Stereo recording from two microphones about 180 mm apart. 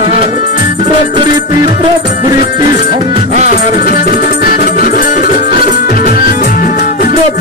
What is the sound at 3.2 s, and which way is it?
Music, 40° right (ahead or behind).